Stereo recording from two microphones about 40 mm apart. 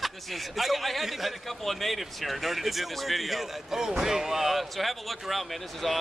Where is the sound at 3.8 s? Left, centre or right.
Centre.